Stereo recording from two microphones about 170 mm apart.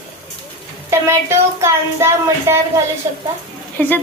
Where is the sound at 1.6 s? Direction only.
15° right (ahead or behind).